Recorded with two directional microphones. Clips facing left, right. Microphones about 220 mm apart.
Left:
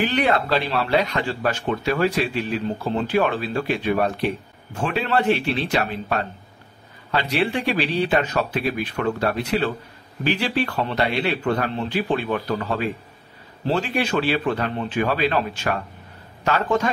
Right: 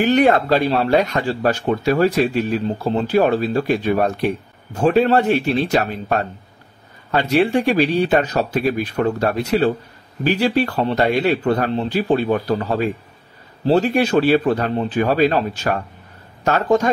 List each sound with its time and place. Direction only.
0.0 s speech: 45° right (ahead or behind)